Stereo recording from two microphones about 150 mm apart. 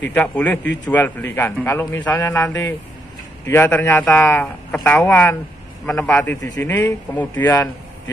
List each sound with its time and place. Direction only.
0.0 s a man's voice: 10° left (ahead or behind)
6.6 s a man's voice: 10° left (ahead or behind)